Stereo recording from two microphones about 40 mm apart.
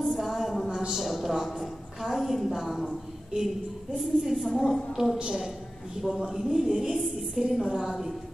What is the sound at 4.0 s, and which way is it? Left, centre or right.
A woman's voice, centre.